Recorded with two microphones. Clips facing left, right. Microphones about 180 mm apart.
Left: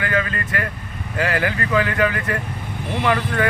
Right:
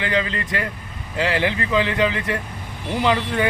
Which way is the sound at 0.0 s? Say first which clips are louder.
Even; 20° right (ahead or behind).